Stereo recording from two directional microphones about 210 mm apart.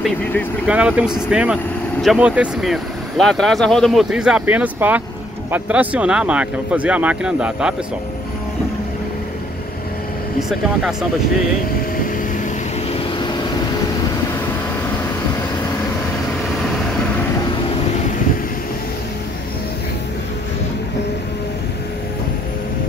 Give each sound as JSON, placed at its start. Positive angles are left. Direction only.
{"t": 0.0, "sound": "speech", "side_deg": 10}
{"t": 0.7, "sound": "speech", "side_deg": -5}
{"t": 12.9, "sound": "vehicle", "side_deg": 20}